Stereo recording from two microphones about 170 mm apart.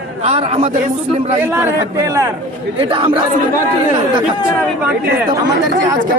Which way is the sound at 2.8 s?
30° right (ahead or behind).